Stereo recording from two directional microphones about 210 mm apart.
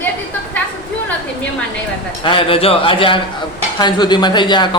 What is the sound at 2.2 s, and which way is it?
A man's voice, 25° left (ahead or behind).